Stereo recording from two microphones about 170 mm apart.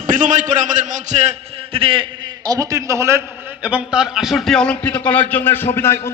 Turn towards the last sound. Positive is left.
turn(degrees=15)  # may be behind; listen again after turning